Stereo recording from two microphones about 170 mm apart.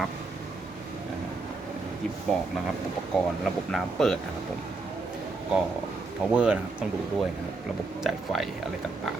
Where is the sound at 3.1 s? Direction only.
Centre (ahead or behind).